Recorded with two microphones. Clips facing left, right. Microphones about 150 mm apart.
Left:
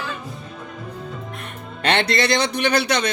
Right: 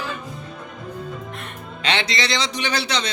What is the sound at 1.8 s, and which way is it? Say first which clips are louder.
Speech: left 4 dB; 55° left (ahead or behind).